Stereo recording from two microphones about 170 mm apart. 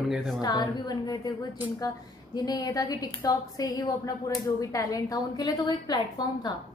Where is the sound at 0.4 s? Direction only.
25° left (ahead or behind).